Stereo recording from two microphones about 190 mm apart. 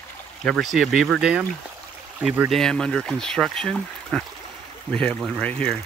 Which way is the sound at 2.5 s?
5° left (ahead or behind).